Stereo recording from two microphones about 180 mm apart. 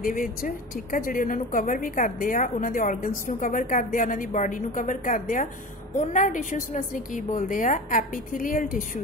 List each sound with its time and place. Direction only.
0.0 s a woman's voice: 50° left (ahead or behind)